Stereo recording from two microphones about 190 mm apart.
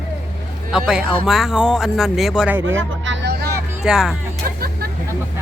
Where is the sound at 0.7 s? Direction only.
5° right (ahead or behind).